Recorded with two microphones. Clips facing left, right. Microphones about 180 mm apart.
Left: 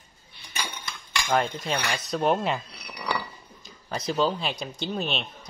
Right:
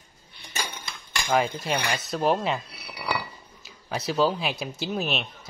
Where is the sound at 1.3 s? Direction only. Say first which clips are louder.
Right 1 dB; 5° right (ahead or behind).